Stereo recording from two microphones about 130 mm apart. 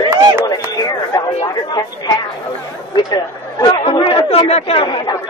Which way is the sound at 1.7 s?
30° left (ahead or behind).